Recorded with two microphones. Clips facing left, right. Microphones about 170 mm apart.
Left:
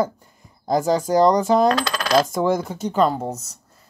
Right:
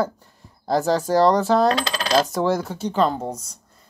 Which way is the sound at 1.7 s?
30° right (ahead or behind).